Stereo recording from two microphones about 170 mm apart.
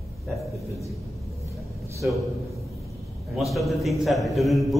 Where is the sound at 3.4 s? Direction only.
Centre (ahead or behind).